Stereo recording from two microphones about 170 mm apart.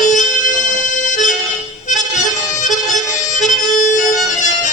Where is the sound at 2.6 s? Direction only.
45° left (ahead or behind).